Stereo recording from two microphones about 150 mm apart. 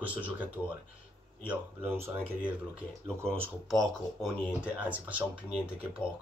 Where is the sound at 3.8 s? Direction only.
Centre (ahead or behind).